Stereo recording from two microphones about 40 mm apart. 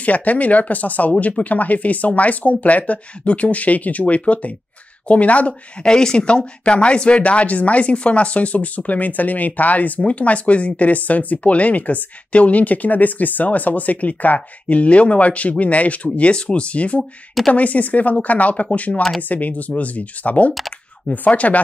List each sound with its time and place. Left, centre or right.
0.0 s speech: left
5.5 s speech: centre; by 21.5 s left